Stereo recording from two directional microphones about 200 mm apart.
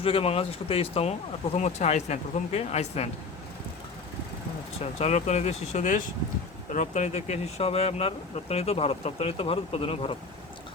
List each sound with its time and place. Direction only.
0.0 s speech: 30° left (ahead or behind)
4.8 s speech: 30° left (ahead or behind)